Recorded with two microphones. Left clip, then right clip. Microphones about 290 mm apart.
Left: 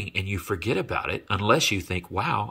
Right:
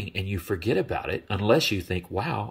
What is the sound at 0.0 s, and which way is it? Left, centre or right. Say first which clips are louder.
Speech: left 3 dB; centre.